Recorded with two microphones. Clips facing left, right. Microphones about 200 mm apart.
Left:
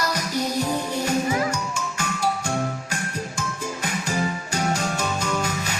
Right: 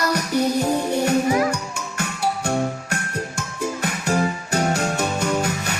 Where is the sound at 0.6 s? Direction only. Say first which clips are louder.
Right 5 dB; 60° right (ahead or behind).